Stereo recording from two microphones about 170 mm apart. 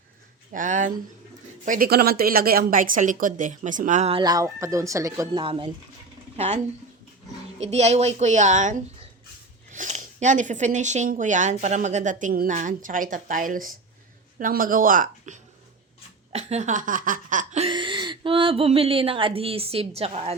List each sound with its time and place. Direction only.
0.5 s speech: 50° right (ahead or behind)
4.2 s speech: 20° right (ahead or behind)
6.3 s speech: 40° right (ahead or behind)
7.6 s speech: 40° right (ahead or behind)
17.7 s a woman's voice: 30° right (ahead or behind)